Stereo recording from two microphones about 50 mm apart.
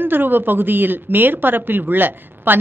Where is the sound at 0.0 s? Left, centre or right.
Right.